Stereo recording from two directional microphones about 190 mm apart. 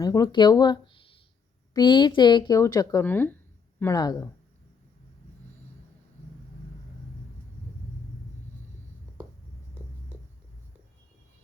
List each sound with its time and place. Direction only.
0.0 s speech: 20° left (ahead or behind)